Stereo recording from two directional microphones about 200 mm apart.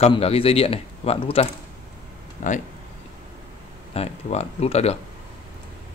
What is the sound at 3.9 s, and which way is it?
Speech, 30° left (ahead or behind).